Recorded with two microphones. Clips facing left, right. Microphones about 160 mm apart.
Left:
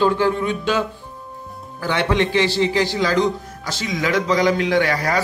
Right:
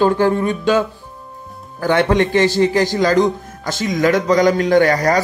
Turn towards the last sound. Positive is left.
turn(degrees=-40)  # may be behind; listen again after turning